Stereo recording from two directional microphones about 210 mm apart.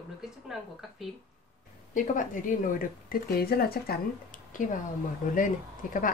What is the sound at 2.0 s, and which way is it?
Speech, 40° left (ahead or behind).